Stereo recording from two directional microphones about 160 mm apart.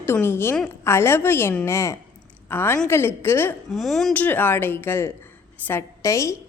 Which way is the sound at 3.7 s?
Centre (ahead or behind).